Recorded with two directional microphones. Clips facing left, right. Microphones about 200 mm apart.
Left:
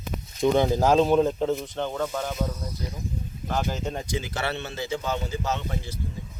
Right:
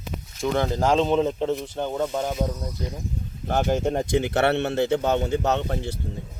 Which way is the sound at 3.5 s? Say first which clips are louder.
Right 7 dB; 55° right (ahead or behind).